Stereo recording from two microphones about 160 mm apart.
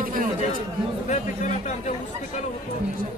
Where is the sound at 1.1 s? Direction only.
50° left (ahead or behind).